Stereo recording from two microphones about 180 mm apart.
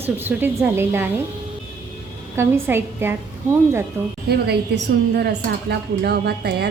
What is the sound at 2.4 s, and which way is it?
A woman's voice, 10° right (ahead or behind).